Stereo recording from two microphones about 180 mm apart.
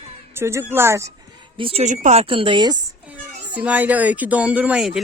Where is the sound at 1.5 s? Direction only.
30° right (ahead or behind).